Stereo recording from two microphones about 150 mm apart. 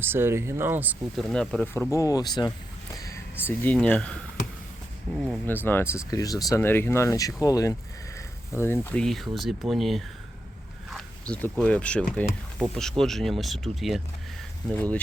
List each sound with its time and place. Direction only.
0.0 s speech: 15° right (ahead or behind)
1.1 s speech: centre (ahead or behind)
1.7 s speech: 20° left (ahead or behind); by 5.4 s centre (ahead or behind)
5.5 s speech: 15° left (ahead or behind)
14.7 s speech: 10° left (ahead or behind)